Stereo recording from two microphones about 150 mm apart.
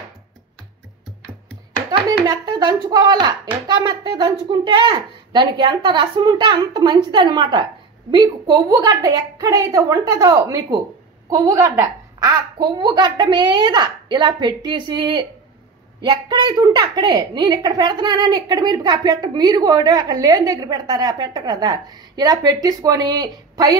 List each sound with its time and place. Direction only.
1.9 s a woman's voice: 25° right (ahead or behind)